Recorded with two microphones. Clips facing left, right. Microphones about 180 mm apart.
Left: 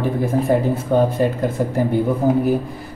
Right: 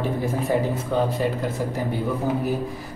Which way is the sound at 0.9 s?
50° left (ahead or behind).